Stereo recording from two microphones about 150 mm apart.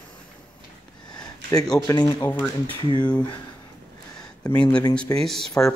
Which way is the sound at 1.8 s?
25° left (ahead or behind).